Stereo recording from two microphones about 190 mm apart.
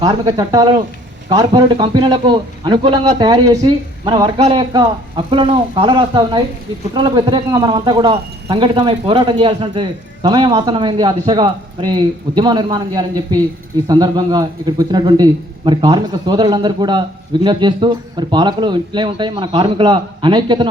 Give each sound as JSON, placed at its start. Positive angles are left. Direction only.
{"t": 0.0, "sound": "a man's voice", "side_deg": -20}